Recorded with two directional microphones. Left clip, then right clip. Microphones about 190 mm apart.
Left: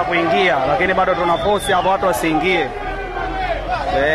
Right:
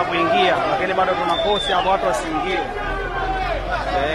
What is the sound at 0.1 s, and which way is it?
A man's voice, 15° left (ahead or behind).